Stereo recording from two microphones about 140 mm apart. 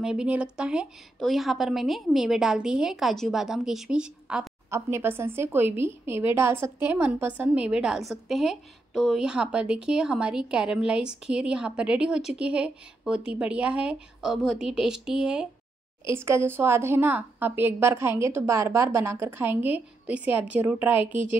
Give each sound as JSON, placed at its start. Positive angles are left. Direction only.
{"t": 0.0, "sound": "a woman's voice", "side_deg": -5}
{"t": 4.6, "sound": "a woman's voice", "side_deg": -20}
{"t": 16.1, "sound": "a woman's voice", "side_deg": -20}